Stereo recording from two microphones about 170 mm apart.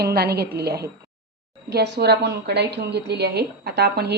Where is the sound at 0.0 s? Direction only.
70° right (ahead or behind).